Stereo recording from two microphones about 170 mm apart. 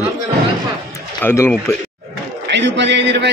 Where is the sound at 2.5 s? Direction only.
90° right.